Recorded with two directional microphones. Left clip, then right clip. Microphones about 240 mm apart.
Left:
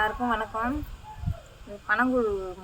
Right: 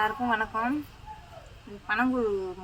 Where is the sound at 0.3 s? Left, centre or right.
Centre.